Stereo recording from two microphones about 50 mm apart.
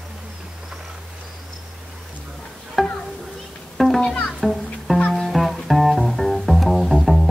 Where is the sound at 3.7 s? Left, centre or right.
Centre.